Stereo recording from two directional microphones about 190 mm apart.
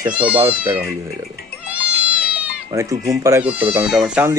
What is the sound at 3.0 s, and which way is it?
Speech, 15° right (ahead or behind).